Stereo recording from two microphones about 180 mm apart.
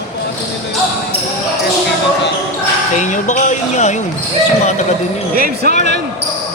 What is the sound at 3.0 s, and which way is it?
Speech, 45° left (ahead or behind).